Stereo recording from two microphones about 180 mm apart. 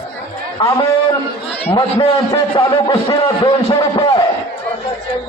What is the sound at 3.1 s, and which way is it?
Speech, 20° left (ahead or behind).